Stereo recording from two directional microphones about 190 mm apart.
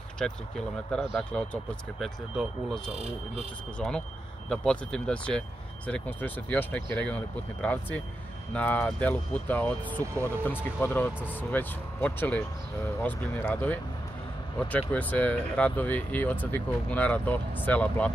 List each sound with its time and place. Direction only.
0.2 s speech: 5° left (ahead or behind)
2.9 s speech: 35° right (ahead or behind)
3.7 s speech: 5° left (ahead or behind)
10.0 s speech: 15° right (ahead or behind)
10.4 s speech: 10° left (ahead or behind)